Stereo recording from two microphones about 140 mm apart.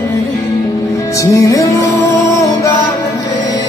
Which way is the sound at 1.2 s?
20° left (ahead or behind).